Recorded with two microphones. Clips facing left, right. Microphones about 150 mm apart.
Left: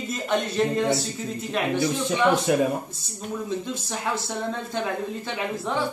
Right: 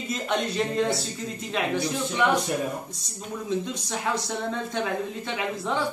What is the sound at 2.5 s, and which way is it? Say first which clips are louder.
Speech: left 7 dB; 90° left.